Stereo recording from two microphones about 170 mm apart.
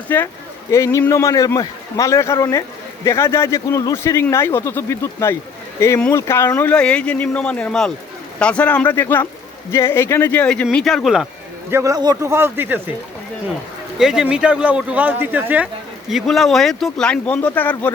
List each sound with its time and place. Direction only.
0.1 s a man's voice: 10° left (ahead or behind)
11.7 s speech: 20° right (ahead or behind)
14.0 s speech: 5° right (ahead or behind)